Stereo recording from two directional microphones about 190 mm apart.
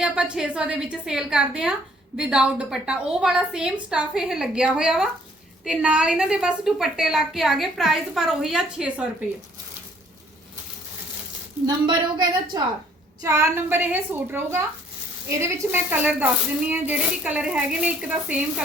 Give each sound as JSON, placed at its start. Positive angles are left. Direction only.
{"t": 0.0, "sound": "a woman's voice", "side_deg": -5}
{"t": 12.5, "sound": "speech", "side_deg": -20}